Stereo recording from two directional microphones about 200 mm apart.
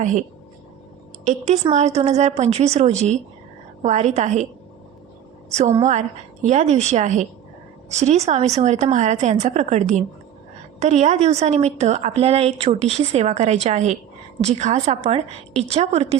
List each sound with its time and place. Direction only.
0.0 s a woman's voice: 40° right (ahead or behind)
5.5 s a woman's voice: 35° right (ahead or behind)